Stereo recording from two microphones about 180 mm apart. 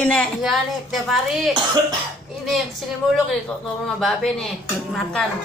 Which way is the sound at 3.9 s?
Centre (ahead or behind).